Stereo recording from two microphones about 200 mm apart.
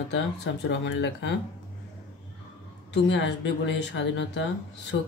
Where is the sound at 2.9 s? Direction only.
65° left (ahead or behind).